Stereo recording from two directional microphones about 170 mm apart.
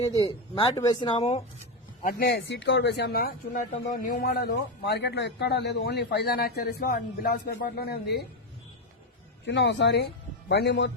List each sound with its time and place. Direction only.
0.2 s speech: 35° left (ahead or behind)
2.0 s a man's voice: 60° left (ahead or behind)
3.8 s a man's voice: 50° left (ahead or behind)
4.3 s a man's voice: 70° left (ahead or behind)
9.5 s speech: 90° left